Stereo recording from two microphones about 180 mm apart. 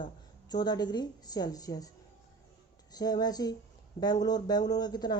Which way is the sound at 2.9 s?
20° left (ahead or behind).